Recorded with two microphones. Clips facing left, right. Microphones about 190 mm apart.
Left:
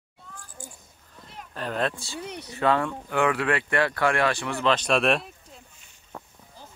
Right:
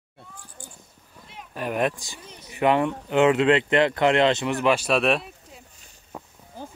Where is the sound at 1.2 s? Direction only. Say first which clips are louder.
Right 3 dB; 10° right (ahead or behind).